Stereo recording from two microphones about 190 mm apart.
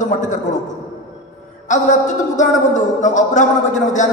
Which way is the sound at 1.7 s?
40° left (ahead or behind).